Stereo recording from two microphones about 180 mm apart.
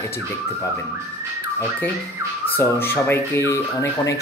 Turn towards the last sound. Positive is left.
turn(degrees=15)  # may be behind; listen again after turning